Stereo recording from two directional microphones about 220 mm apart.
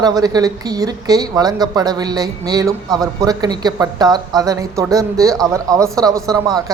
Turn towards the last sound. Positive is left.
turn(degrees=-15)  # may be behind; listen again after turning